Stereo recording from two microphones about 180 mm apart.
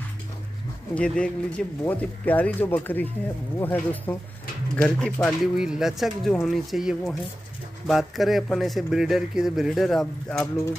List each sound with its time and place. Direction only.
0.9 s speech: 5° left (ahead or behind)